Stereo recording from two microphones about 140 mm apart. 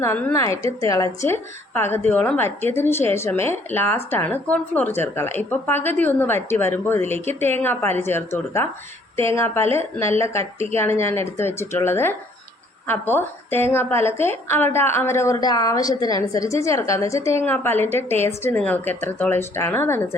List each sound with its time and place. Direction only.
0.3 s a woman's voice: 20° left (ahead or behind)